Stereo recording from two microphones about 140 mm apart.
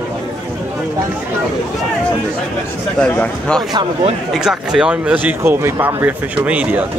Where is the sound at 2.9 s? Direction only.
10° left (ahead or behind).